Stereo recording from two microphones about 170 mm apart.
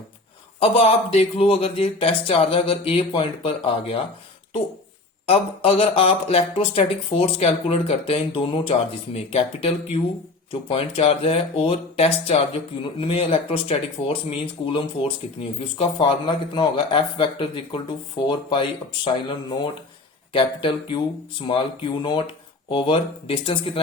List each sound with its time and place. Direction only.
0.6 s speech: 35° left (ahead or behind)
5.2 s a man's voice: 35° left (ahead or behind)
19.0 s a man's voice: 30° left (ahead or behind)